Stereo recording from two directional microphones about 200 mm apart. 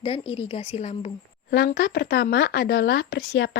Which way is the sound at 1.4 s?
55° left (ahead or behind).